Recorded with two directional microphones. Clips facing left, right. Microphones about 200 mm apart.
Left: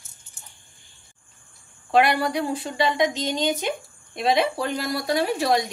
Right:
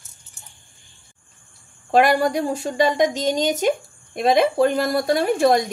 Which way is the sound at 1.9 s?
45° right (ahead or behind).